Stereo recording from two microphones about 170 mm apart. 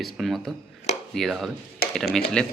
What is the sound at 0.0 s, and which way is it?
Speech, centre (ahead or behind).